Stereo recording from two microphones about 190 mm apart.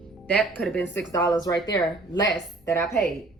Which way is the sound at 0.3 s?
5° left (ahead or behind).